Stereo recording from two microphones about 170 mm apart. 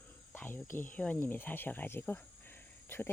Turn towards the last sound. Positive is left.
turn(degrees=15)  # may be behind; listen again after turning